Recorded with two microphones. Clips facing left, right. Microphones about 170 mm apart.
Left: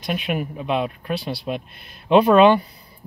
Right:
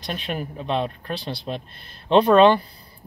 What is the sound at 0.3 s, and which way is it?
Speech, 10° left (ahead or behind).